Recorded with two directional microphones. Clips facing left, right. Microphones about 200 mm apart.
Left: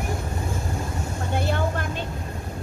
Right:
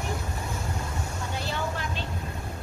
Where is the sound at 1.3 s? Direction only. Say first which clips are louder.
Left 7 dB; 55° left (ahead or behind).